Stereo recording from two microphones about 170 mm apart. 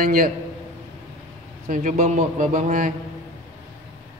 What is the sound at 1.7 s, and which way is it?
A man's voice, 45° right (ahead or behind).